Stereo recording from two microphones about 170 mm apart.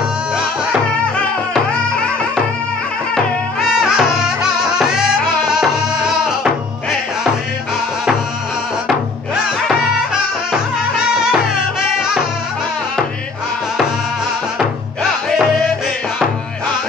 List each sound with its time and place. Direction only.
3.8 s music: 5° right (ahead or behind)
8.8 s music: 5° right (ahead or behind)